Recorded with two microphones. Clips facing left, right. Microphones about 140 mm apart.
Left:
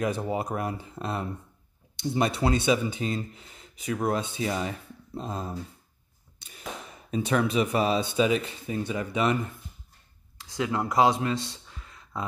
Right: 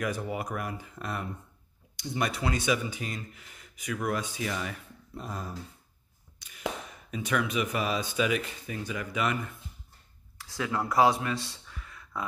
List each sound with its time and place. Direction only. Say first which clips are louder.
0.0 s speech: left 4 dB; 25° left (ahead or behind)
6.4 s a sound: left 5 dB; 30° left (ahead or behind)
7.1 s speech: left 5 dB; 30° left (ahead or behind)